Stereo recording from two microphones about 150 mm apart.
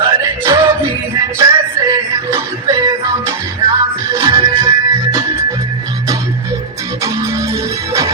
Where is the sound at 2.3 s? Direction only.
25° right (ahead or behind).